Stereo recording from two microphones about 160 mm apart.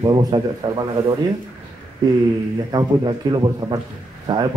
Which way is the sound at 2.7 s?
25° right (ahead or behind).